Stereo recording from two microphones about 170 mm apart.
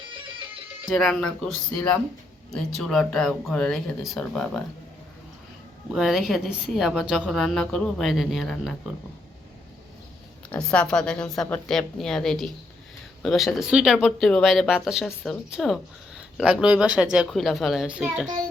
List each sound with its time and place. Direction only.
0.3 s music: 30° right (ahead or behind)
0.9 s speech: centre (ahead or behind)
2.5 s speech: centre (ahead or behind)
5.9 s speech: 5° right (ahead or behind)
10.5 s speech: 5° left (ahead or behind)